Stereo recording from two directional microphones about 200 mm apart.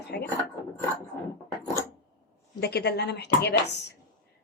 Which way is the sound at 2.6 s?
55° left (ahead or behind).